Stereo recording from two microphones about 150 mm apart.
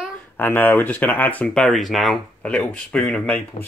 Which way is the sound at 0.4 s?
15° left (ahead or behind).